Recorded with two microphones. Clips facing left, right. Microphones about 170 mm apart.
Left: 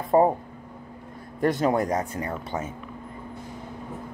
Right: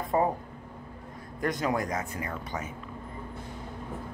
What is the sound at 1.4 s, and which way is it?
Speech, 30° left (ahead or behind).